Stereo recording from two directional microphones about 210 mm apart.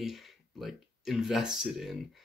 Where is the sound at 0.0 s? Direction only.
Centre (ahead or behind).